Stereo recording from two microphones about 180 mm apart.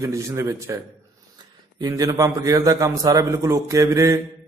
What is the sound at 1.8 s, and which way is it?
A man's voice, 20° right (ahead or behind).